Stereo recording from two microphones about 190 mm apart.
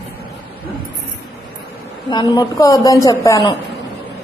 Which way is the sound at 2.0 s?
25° left (ahead or behind).